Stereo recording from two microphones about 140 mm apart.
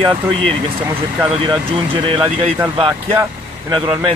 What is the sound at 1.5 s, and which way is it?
Speech, 35° right (ahead or behind).